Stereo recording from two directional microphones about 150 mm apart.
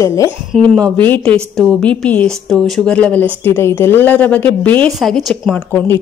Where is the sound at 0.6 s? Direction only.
10° left (ahead or behind).